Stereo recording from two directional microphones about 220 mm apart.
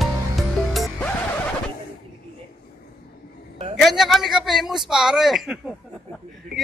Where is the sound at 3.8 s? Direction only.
Centre (ahead or behind).